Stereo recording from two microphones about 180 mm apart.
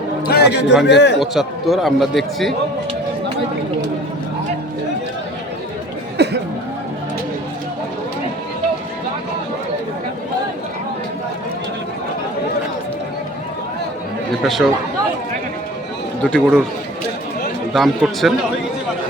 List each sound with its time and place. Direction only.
0.3 s a man's voice: 65° left (ahead or behind)
1.2 s speech: centre (ahead or behind)
6.2 s music: 65° right (ahead or behind)
14.4 s speech: centre (ahead or behind)
16.2 s speech: 5° left (ahead or behind)
17.7 s speech: centre (ahead or behind)